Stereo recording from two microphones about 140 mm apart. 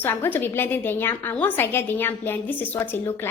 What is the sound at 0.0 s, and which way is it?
A woman's voice, 15° left (ahead or behind).